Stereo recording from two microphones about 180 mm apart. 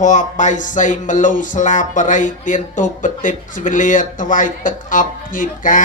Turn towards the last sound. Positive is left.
turn(degrees=45)  # may be behind; listen again after turning